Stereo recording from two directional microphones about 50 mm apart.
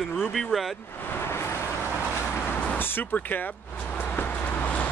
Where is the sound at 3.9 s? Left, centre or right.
Left.